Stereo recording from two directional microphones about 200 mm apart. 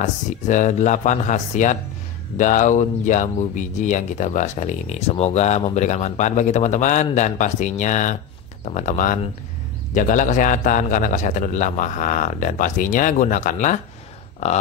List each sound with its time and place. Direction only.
0.0 s speech: 40° left (ahead or behind)